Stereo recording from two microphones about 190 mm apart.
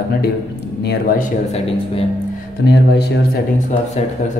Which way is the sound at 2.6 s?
65° left (ahead or behind).